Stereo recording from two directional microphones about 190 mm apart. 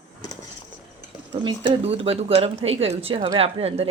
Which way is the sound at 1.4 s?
30° right (ahead or behind).